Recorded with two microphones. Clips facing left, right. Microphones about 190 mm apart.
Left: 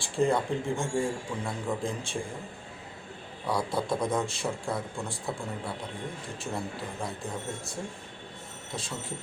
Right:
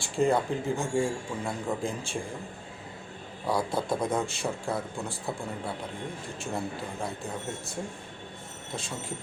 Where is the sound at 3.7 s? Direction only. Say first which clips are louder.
Even; 25° right (ahead or behind).